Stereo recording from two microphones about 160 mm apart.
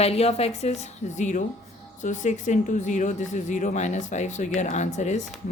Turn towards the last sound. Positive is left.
turn(degrees=50)  # may be behind; listen again after turning